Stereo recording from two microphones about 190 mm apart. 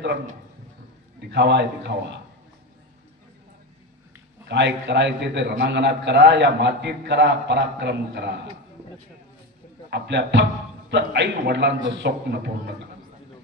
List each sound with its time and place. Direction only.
1.3 s a man's voice: 65° right (ahead or behind)
4.5 s a man's voice: 65° right (ahead or behind)
9.8 s a man's voice: 65° right (ahead or behind)